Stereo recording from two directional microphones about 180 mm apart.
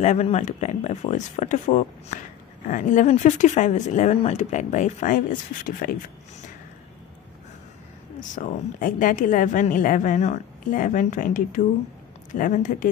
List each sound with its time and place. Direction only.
0.0 s speech: 40° left (ahead or behind)
8.2 s speech: 45° left (ahead or behind)